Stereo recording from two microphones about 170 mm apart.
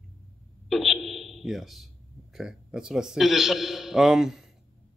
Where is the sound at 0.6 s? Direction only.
Centre (ahead or behind).